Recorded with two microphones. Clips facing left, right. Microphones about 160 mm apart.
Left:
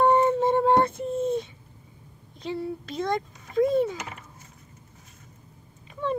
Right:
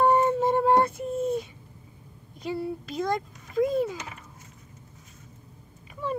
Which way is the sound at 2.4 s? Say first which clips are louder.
Even; 5° right (ahead or behind).